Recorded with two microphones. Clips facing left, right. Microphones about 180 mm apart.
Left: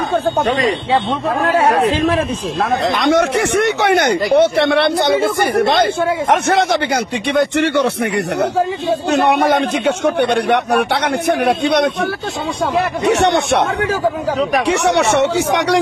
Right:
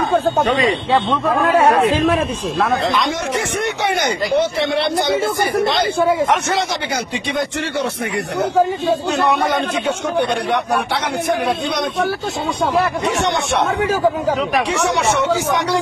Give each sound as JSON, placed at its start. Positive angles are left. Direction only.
{"t": 3.0, "sound": "speech", "side_deg": 65}
{"t": 7.3, "sound": "a man's voice", "side_deg": 65}
{"t": 9.1, "sound": "a man's voice", "side_deg": 65}
{"t": 13.0, "sound": "a man's voice", "side_deg": 70}
{"t": 14.9, "sound": "a man's voice", "side_deg": 70}